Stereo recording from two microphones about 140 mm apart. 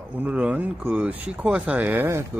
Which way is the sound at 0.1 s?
10° right (ahead or behind).